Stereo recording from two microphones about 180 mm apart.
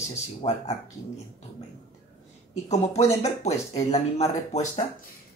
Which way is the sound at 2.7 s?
35° left (ahead or behind).